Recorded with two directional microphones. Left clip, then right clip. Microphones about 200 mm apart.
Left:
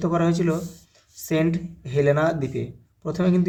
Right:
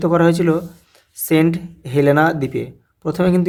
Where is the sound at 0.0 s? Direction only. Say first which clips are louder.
Right 8 dB; 45° right (ahead or behind).